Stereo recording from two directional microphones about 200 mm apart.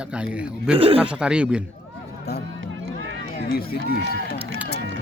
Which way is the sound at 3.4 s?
50° left (ahead or behind).